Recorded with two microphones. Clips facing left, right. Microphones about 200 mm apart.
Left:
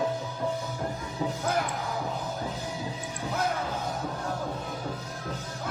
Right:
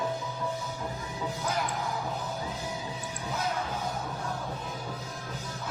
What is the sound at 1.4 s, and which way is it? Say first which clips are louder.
Music: left 3 dB; 50° left (ahead or behind).